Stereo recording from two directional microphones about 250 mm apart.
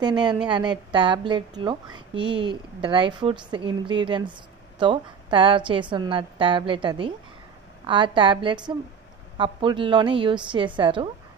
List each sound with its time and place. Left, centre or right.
0.5 s a woman's voice: centre